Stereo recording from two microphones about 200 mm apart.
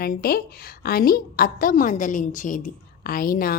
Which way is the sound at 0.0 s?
45° left (ahead or behind).